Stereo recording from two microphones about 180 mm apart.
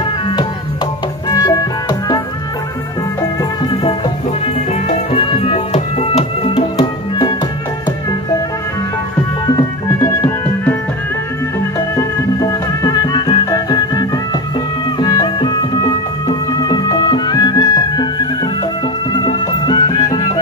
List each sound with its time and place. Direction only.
1.3 s music: 20° left (ahead or behind)
5.1 s music: 35° left (ahead or behind)
9.6 s music: 15° left (ahead or behind)
11.9 s music: 20° left (ahead or behind)